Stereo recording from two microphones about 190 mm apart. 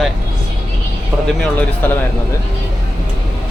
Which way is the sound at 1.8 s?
10° left (ahead or behind).